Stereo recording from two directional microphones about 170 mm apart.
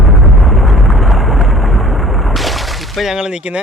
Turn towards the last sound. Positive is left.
turn(degrees=-5)  # may be behind; listen again after turning